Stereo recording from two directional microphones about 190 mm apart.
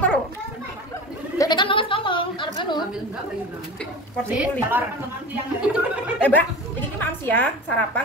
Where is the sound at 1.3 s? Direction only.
20° left (ahead or behind).